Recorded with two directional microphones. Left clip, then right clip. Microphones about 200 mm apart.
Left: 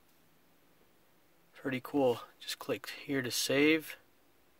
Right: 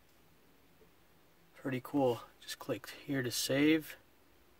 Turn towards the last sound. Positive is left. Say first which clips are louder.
# left 2 dB
turn(degrees=20)  # may be behind; listen again after turning